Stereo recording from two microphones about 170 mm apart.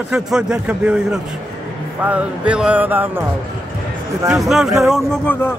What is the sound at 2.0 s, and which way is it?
Music, 10° right (ahead or behind).